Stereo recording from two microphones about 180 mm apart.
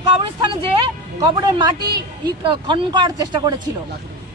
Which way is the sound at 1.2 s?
20° right (ahead or behind).